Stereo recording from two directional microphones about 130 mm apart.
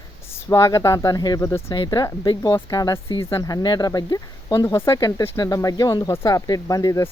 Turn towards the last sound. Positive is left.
turn(degrees=25)  # may be behind; listen again after turning